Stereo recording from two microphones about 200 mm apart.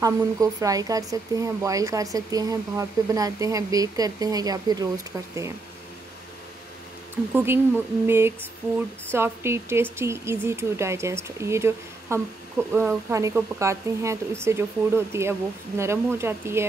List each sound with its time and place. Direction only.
0.0 s speech: 15° right (ahead or behind)
7.3 s speech: 10° right (ahead or behind)